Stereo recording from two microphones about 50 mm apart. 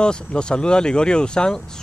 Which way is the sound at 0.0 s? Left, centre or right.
Centre.